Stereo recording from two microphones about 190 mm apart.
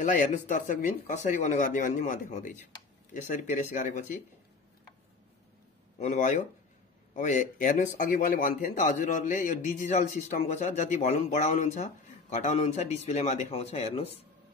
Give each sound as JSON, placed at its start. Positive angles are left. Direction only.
{"t": 0.0, "sound": "speech", "side_deg": 45}
{"t": 5.9, "sound": "speech", "side_deg": 40}